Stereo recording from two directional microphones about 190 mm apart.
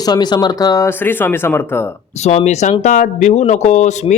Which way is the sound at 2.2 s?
35° left (ahead or behind).